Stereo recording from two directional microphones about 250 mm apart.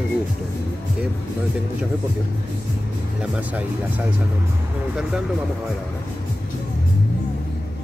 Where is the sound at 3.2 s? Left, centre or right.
Centre.